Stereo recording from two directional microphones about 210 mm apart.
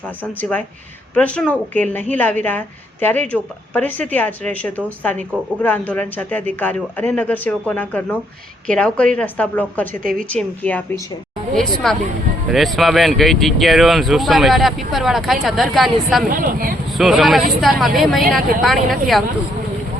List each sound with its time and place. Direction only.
1.1 s a woman's voice: 5° left (ahead or behind)
9.8 s a woman's voice: 40° right (ahead or behind)
10.3 s a woman's voice: 5° left (ahead or behind)
16.3 s a woman's voice: 40° right (ahead or behind)
17.0 s speech: centre (ahead or behind)